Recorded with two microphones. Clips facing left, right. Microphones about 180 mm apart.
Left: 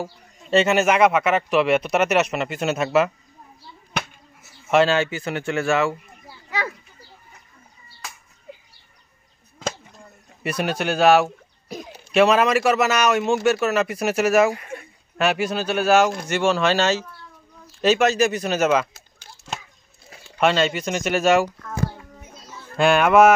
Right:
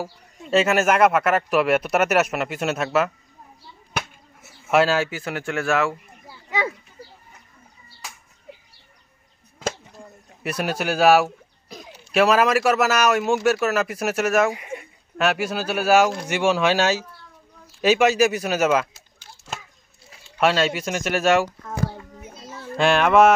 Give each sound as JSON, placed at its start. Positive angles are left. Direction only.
{"t": 0.0, "sound": "speech", "side_deg": -5}
{"t": 4.6, "sound": "speech", "side_deg": -5}
{"t": 6.5, "sound": "speech", "side_deg": -20}
{"t": 9.6, "sound": "a sound", "side_deg": -10}
{"t": 12.1, "sound": "speech", "side_deg": -5}
{"t": 14.5, "sound": "speech", "side_deg": -15}
{"t": 15.1, "sound": "speech", "side_deg": 0}
{"t": 20.3, "sound": "speech", "side_deg": -5}
{"t": 22.8, "sound": "speech", "side_deg": 0}